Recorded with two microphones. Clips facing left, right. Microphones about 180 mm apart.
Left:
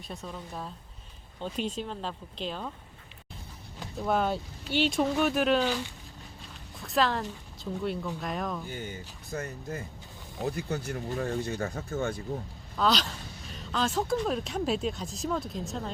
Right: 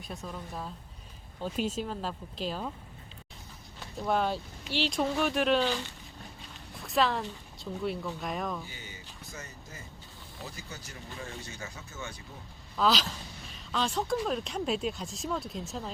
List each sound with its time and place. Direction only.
0.1 s speech: centre (ahead or behind)
4.0 s speech: centre (ahead or behind)
8.6 s speech: 55° left (ahead or behind)
12.7 s speech: centre (ahead or behind)